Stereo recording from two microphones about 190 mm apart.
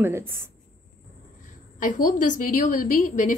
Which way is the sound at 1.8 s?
45° left (ahead or behind).